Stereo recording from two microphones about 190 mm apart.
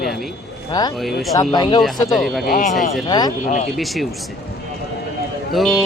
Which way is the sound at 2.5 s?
45° left (ahead or behind).